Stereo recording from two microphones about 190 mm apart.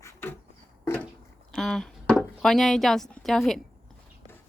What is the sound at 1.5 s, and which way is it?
Speech, centre (ahead or behind).